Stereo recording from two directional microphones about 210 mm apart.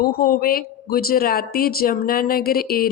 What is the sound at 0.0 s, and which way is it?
A woman's voice, 45° left (ahead or behind).